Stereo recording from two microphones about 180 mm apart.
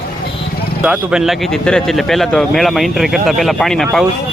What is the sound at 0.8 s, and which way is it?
A man's voice, 5° right (ahead or behind).